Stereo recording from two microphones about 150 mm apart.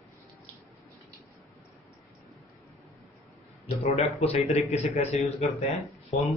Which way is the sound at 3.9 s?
45° left (ahead or behind).